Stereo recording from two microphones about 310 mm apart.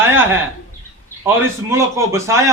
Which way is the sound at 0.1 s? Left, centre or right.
Centre.